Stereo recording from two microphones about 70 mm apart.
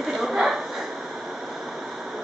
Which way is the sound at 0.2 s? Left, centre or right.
Centre.